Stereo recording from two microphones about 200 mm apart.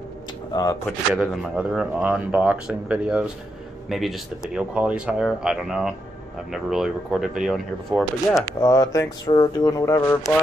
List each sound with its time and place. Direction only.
0.5 s speech: 20° left (ahead or behind)
0.8 s speech: centre (ahead or behind)
8.5 s speech: 15° left (ahead or behind)